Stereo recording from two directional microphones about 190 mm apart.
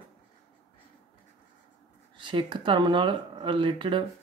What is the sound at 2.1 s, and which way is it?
Speech, 25° right (ahead or behind).